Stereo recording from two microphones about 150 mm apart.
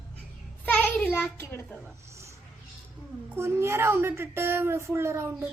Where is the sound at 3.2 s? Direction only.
15° right (ahead or behind).